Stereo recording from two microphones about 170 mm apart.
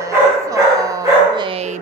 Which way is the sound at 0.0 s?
20° right (ahead or behind).